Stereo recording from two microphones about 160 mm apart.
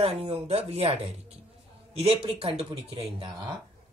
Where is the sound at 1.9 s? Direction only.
35° right (ahead or behind).